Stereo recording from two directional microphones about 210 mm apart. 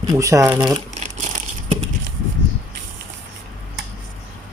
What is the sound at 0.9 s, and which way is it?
Crumpling, 35° right (ahead or behind).